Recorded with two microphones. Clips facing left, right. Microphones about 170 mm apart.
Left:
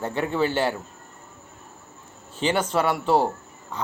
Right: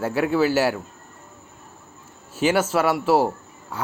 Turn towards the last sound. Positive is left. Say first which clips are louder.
# right 2 dB
turn(degrees=-5)  # may be behind; listen again after turning